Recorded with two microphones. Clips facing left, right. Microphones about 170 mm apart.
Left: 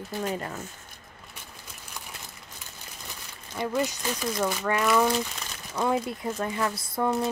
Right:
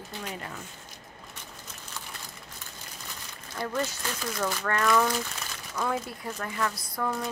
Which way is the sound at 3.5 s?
15° left (ahead or behind).